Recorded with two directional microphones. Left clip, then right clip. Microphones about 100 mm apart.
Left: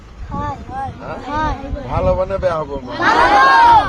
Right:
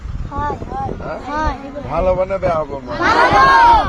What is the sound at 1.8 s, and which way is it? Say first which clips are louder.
Speech: right 1 dB; 25° left (ahead or behind).